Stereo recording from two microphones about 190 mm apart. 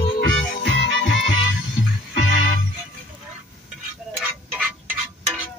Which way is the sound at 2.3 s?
45° left (ahead or behind).